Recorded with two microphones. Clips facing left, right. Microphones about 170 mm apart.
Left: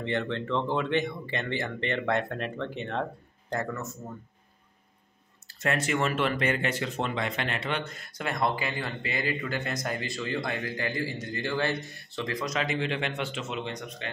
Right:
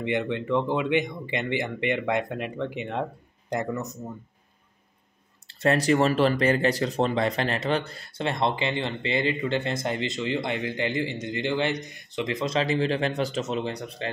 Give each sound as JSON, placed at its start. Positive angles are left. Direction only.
{"t": 0.0, "sound": "speech", "side_deg": -15}
{"t": 5.5, "sound": "speech", "side_deg": -35}